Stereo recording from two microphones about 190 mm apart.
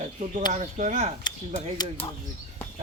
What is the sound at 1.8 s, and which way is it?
Speech, 30° left (ahead or behind).